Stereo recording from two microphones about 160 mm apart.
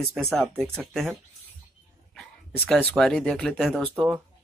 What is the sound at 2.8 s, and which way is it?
Speech, 5° left (ahead or behind).